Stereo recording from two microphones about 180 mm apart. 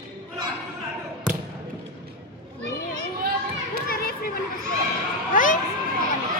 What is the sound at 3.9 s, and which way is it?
Children playing, 55° left (ahead or behind).